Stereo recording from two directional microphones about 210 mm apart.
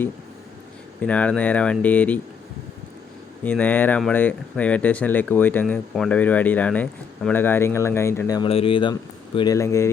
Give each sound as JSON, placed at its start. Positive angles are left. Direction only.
{"t": 1.0, "sound": "speech", "side_deg": 5}
{"t": 3.4, "sound": "speech", "side_deg": 10}
{"t": 8.4, "sound": "speech", "side_deg": 25}